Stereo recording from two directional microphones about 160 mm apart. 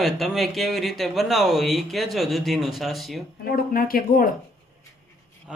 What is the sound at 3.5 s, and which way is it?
Speech, 70° left (ahead or behind).